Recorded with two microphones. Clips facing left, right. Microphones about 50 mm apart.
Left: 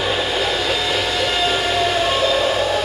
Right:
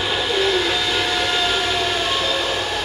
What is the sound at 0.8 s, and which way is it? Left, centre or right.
Train, centre.